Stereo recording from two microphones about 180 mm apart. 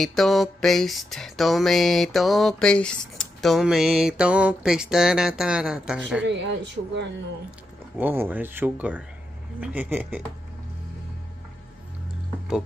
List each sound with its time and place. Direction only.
0.0 s a sound: centre (ahead or behind)
6.2 s speech: 80° right
8.0 s speech: 10° right (ahead or behind)